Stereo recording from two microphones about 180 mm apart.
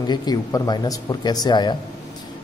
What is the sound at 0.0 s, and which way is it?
Speech, 25° left (ahead or behind).